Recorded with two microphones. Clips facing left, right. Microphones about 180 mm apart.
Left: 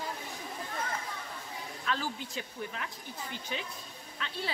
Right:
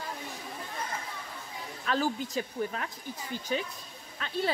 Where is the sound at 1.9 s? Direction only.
45° right (ahead or behind).